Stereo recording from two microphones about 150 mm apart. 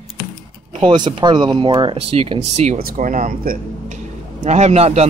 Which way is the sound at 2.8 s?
60° right (ahead or behind).